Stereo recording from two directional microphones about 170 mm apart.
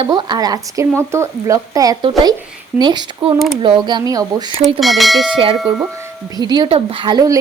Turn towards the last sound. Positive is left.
turn(degrees=-20)  # may be behind; listen again after turning